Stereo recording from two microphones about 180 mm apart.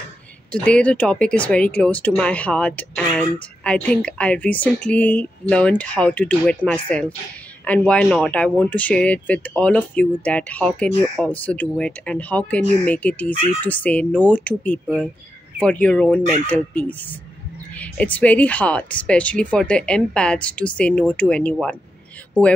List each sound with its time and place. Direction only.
0.5 s speech: 5° left (ahead or behind)
16.2 s speech: 40° right (ahead or behind)
16.4 s speech: 10° left (ahead or behind)